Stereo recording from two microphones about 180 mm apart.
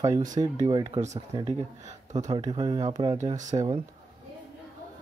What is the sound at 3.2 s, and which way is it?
Speech, 40° right (ahead or behind).